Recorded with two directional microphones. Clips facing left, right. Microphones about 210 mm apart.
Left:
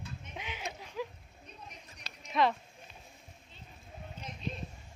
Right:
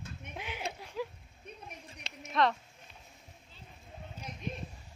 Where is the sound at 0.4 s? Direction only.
10° right (ahead or behind).